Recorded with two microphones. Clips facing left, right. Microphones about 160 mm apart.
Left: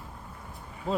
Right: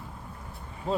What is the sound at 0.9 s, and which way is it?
Speech, centre (ahead or behind).